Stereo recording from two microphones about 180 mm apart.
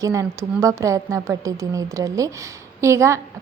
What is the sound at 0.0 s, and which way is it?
A woman's voice, 15° right (ahead or behind).